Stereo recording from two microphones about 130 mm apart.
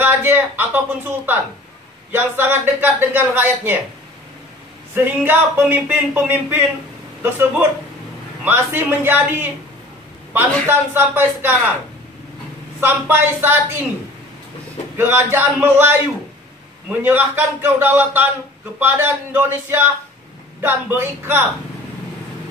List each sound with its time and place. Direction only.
0.0 s speech: 15° right (ahead or behind)
4.9 s speech: 15° right (ahead or behind)
8.5 s speech: 15° right (ahead or behind)
10.7 s speech: 15° right (ahead or behind)
12.8 s speech: 15° right (ahead or behind)
15.0 s speech: 15° right (ahead or behind)